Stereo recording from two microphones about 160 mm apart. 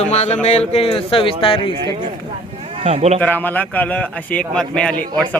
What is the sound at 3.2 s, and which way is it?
A man's voice, 10° left (ahead or behind).